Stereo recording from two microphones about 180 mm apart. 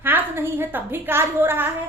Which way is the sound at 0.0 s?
10° right (ahead or behind).